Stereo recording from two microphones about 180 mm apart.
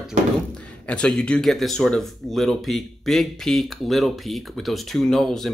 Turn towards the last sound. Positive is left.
turn(degrees=0)  # may be behind; listen again after turning